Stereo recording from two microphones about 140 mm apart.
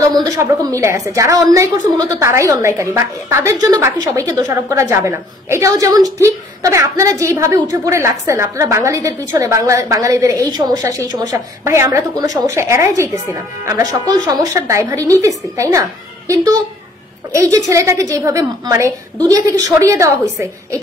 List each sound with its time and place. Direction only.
0.1 s speech: 25° right (ahead or behind)